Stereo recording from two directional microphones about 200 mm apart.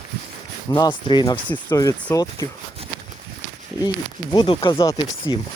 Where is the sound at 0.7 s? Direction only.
20° left (ahead or behind).